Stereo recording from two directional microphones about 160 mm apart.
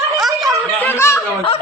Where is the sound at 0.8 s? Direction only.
15° left (ahead or behind).